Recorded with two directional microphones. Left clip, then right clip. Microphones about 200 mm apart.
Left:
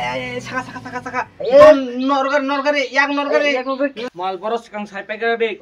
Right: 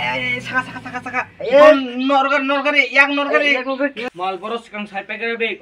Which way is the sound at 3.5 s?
Centre (ahead or behind).